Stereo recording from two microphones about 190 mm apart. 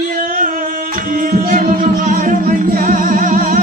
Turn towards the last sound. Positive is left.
turn(degrees=-45)  # may be behind; listen again after turning